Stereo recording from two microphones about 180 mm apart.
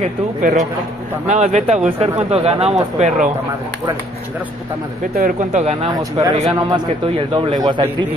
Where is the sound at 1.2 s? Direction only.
40° right (ahead or behind).